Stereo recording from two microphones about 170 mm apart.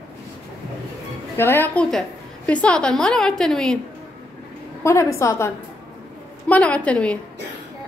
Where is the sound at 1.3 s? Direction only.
15° left (ahead or behind).